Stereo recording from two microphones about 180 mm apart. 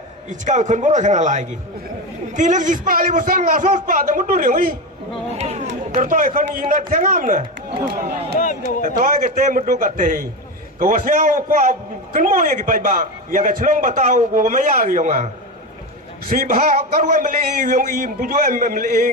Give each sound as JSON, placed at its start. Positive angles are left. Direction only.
{"t": 0.3, "sound": "a man's voice", "side_deg": -45}
{"t": 5.3, "sound": "a man's voice", "side_deg": -35}
{"t": 8.4, "sound": "speech", "side_deg": 50}
{"t": 8.8, "sound": "a man's voice", "side_deg": -45}